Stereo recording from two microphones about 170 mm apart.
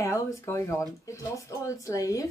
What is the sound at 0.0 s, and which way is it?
A woman's voice, 15° left (ahead or behind).